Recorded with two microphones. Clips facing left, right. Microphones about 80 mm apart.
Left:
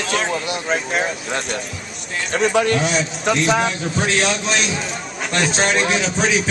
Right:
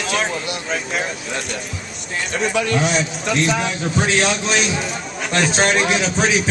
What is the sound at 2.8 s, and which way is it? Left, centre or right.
Speech, centre.